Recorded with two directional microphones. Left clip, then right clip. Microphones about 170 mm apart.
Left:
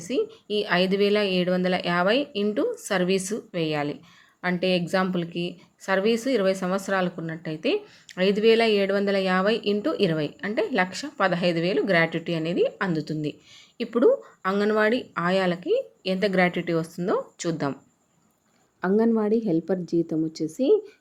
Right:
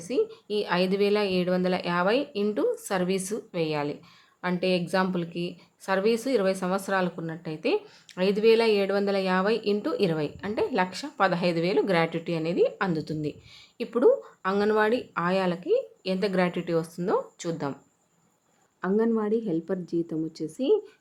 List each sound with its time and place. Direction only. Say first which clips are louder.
0.0 s a woman's voice: even; 10° left (ahead or behind)
18.8 s a woman's voice: left 3 dB; 20° left (ahead or behind)